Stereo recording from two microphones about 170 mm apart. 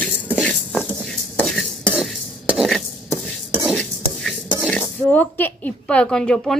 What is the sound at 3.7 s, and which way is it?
Speech, 5° left (ahead or behind).